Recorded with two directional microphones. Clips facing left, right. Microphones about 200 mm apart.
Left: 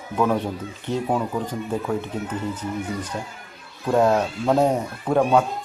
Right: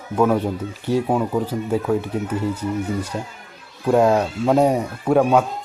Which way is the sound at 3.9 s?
10° right (ahead or behind).